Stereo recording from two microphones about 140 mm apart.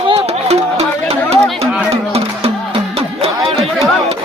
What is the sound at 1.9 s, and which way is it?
Music, 45° right (ahead or behind).